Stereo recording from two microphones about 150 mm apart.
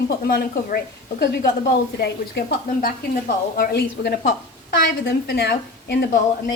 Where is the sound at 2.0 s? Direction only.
80° left.